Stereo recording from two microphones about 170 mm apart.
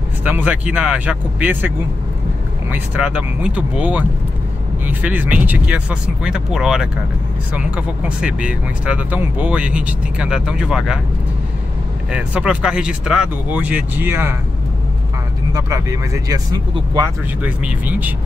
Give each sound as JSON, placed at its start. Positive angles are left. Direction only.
{"t": 0.2, "sound": "speech", "side_deg": -10}
{"t": 2.7, "sound": "speech", "side_deg": -10}
{"t": 12.1, "sound": "speech", "side_deg": -5}
{"t": 15.5, "sound": "speech", "side_deg": -20}
{"t": 17.4, "sound": "speech", "side_deg": -10}